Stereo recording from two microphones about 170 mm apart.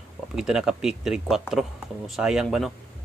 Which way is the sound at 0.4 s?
5° right (ahead or behind).